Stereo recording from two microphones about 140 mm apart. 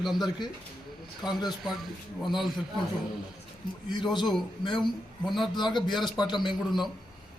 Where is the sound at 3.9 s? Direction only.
35° left (ahead or behind).